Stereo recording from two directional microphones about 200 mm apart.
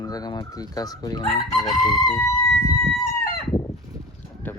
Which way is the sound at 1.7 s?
Centre (ahead or behind).